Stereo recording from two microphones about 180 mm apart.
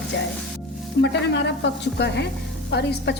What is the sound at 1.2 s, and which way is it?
A woman's voice, 75° left (ahead or behind).